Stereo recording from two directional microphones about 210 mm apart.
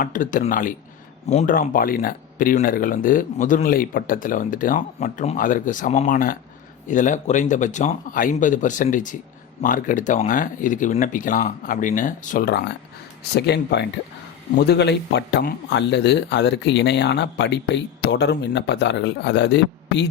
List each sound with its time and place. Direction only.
0.0 s speech: 40° left (ahead or behind); by 20.1 s 55° left (ahead or behind)